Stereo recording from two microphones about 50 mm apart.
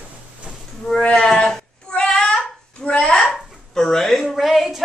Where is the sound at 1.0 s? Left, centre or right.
Centre.